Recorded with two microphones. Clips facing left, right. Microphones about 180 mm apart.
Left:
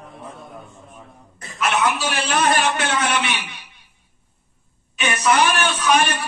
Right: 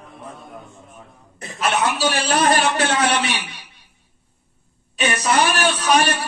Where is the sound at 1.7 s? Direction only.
35° right (ahead or behind).